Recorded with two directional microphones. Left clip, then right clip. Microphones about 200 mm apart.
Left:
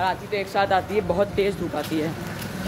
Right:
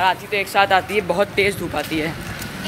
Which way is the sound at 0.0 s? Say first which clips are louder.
Right 6 dB; 10° right (ahead or behind).